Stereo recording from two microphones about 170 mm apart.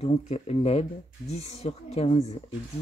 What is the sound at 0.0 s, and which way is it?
Speech, 40° left (ahead or behind).